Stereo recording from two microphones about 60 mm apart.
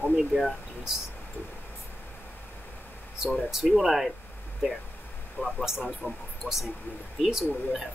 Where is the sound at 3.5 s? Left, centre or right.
Centre.